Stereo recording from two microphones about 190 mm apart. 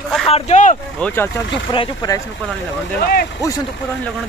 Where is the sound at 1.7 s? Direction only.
25° left (ahead or behind).